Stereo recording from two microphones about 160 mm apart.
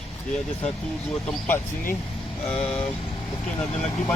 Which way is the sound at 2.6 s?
5° left (ahead or behind).